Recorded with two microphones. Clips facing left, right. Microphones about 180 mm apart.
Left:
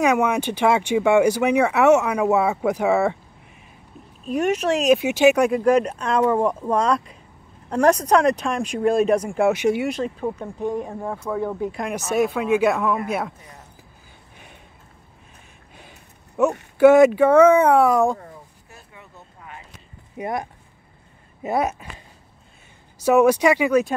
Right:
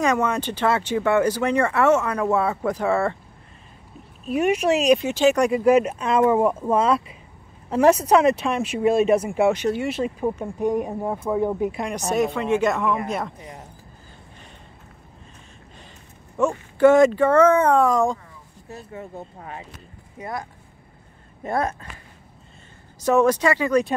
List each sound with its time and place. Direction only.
0.0 s speech: 10° left (ahead or behind)
4.3 s speech: 10° right (ahead or behind)
5.6 s speech: 5° right (ahead or behind)
9.5 s speech: 10° left (ahead or behind)
9.8 s speech: 5° right (ahead or behind)
11.7 s speech: centre (ahead or behind)
16.4 s speech: 10° left (ahead or behind)
18.9 s speech: 50° right (ahead or behind)
20.2 s speech: 20° left (ahead or behind)
21.4 s speech: 10° left (ahead or behind)
23.0 s speech: 10° left (ahead or behind)